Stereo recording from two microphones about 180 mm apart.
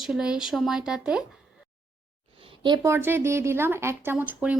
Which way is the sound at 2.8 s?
10° right (ahead or behind).